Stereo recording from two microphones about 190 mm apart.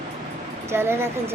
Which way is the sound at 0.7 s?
10° right (ahead or behind).